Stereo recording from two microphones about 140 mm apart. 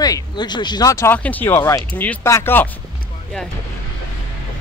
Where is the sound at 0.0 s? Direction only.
30° left (ahead or behind).